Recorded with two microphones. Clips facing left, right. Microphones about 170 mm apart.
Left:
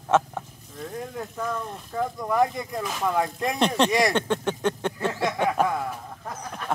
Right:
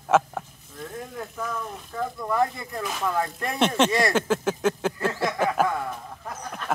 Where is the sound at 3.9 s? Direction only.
15° left (ahead or behind).